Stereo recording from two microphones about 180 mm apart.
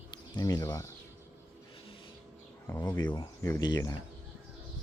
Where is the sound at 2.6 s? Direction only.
15° left (ahead or behind).